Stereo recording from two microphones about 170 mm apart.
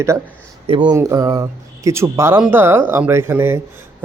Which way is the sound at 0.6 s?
30° right (ahead or behind).